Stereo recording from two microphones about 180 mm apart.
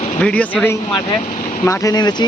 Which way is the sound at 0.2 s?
5° left (ahead or behind).